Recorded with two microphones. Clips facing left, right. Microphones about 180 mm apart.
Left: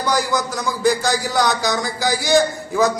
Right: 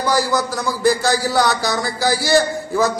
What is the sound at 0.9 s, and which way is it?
A man's voice, 15° left (ahead or behind).